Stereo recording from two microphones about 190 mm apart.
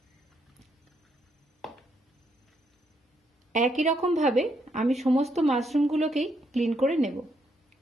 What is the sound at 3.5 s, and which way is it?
Speech, 40° right (ahead or behind).